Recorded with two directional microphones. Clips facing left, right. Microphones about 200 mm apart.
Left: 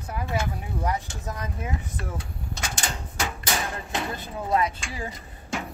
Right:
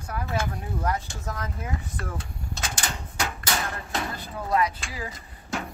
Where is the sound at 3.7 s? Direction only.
20° left (ahead or behind).